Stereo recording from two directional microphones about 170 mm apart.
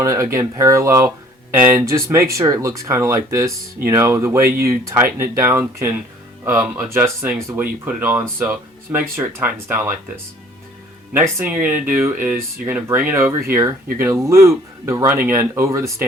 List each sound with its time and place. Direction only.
0.0 s speech: 15° right (ahead or behind)
11.1 s speech: 15° right (ahead or behind)